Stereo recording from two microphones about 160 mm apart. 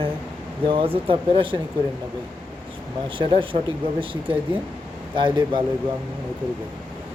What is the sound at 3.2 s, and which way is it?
Speech, 30° right (ahead or behind).